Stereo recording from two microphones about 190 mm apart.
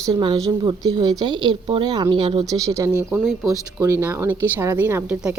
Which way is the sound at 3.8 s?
15° right (ahead or behind).